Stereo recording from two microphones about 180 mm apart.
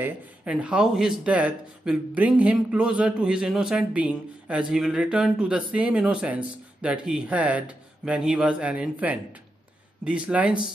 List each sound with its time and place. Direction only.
0.0 s speech: 5° right (ahead or behind)